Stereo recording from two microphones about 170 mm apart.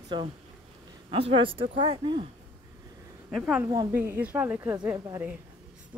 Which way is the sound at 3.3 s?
5° right (ahead or behind).